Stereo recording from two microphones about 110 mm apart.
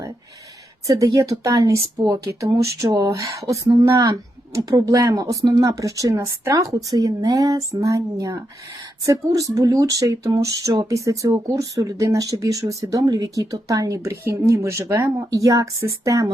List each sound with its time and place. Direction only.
0.9 s speech: 30° right (ahead or behind)